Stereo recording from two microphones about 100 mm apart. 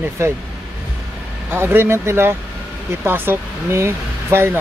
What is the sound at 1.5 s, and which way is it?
Speech, 20° right (ahead or behind).